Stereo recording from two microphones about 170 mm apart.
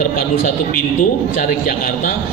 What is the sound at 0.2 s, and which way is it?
A man's voice, 55° left (ahead or behind).